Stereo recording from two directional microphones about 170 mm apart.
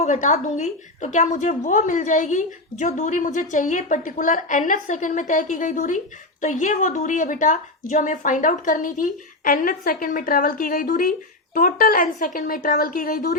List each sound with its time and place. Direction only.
0.0 s a woman's voice: 45° left (ahead or behind)